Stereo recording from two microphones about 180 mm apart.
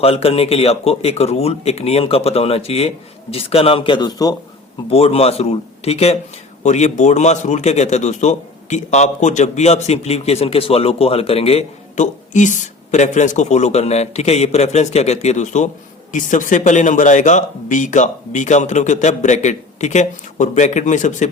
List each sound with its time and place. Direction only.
0.0 s a man's voice: 35° left (ahead or behind)
4.9 s a man's voice: 35° left (ahead or behind)